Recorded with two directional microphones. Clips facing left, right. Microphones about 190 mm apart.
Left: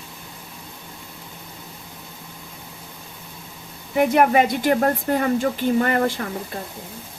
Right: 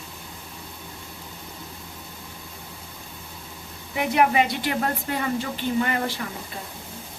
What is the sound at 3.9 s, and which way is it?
A woman's voice, 50° left (ahead or behind).